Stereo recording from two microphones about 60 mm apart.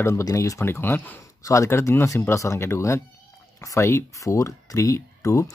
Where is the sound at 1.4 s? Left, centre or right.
Left.